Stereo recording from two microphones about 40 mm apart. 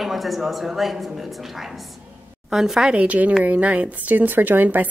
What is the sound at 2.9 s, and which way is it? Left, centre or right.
A woman's voice, right.